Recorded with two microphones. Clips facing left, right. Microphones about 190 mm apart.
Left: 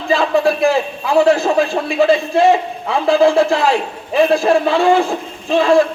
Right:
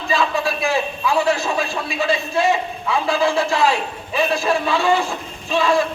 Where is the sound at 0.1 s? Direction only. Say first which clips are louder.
Left 7 dB; 55° left (ahead or behind).